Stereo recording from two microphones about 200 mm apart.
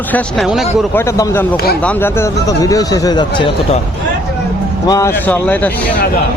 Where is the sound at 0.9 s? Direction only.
15° left (ahead or behind).